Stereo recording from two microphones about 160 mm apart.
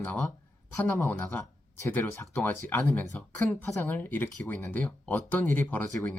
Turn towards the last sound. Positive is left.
turn(degrees=10)  # may be behind; listen again after turning